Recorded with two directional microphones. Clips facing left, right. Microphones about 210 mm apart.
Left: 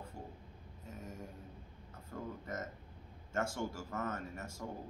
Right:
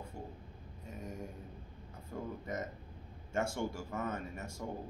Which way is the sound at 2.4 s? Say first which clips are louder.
Right 3 dB; 15° right (ahead or behind).